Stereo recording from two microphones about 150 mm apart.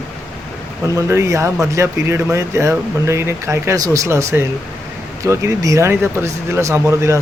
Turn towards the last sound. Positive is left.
turn(degrees=-20)  # may be behind; listen again after turning